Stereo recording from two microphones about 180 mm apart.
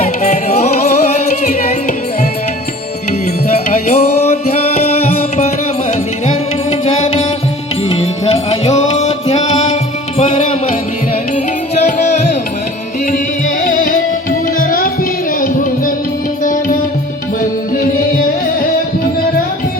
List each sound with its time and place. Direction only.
0.0 s music: 40° left (ahead or behind)
3.7 s music: 35° left (ahead or behind)
11.7 s music: 40° left (ahead or behind)
13.7 s music: 50° left (ahead or behind)
16.4 s music: 50° left (ahead or behind)
17.7 s music: 50° left (ahead or behind)